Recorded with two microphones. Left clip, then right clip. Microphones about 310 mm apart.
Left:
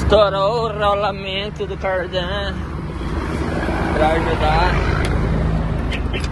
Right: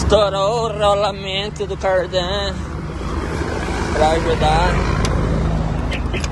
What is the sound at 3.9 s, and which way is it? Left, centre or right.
Speech, centre.